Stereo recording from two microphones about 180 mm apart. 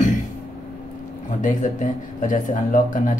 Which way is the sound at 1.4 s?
45° left (ahead or behind).